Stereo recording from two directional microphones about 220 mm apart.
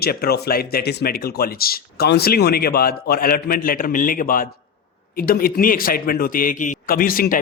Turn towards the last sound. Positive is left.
turn(degrees=40)  # may be behind; listen again after turning